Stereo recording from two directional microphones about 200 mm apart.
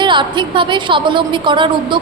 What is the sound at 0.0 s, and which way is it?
A woman's voice, 25° right (ahead or behind).